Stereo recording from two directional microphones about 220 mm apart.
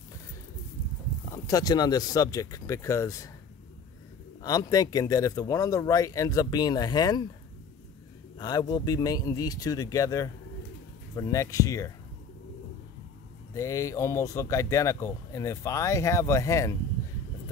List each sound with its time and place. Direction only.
1.3 s speech: 15° left (ahead or behind)
4.4 s speech: 15° left (ahead or behind)
8.4 s speech: 20° left (ahead or behind)
13.6 s speech: 15° left (ahead or behind)